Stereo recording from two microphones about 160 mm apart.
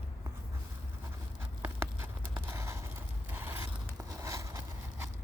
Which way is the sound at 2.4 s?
15° right (ahead or behind).